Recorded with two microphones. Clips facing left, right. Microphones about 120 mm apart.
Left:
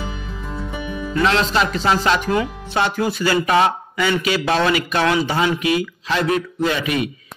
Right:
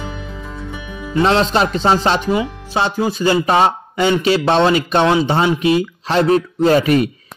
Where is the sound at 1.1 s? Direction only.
35° right (ahead or behind).